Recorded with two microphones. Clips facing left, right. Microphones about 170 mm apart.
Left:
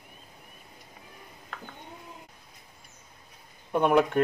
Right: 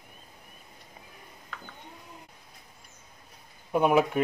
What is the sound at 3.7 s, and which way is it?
Speech, 5° right (ahead or behind).